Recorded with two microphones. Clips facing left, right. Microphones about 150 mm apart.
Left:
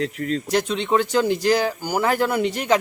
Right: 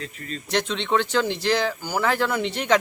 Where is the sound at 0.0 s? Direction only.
80° left.